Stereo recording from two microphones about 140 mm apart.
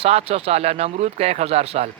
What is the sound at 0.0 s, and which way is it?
Speech, 45° right (ahead or behind).